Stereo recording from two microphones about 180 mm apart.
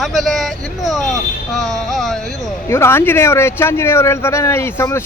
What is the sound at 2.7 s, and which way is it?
Speech, 15° left (ahead or behind).